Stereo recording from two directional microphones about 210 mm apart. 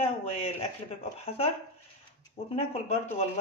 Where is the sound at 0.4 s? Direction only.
30° left (ahead or behind).